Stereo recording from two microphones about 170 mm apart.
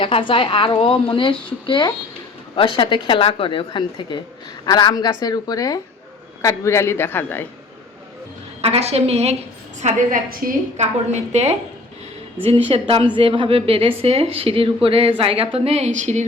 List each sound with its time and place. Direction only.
0.0 s a woman's voice: 30° left (ahead or behind); by 7.4 s 10° left (ahead or behind)
8.6 s speech: 40° right (ahead or behind)
9.8 s a woman's voice: 55° right (ahead or behind)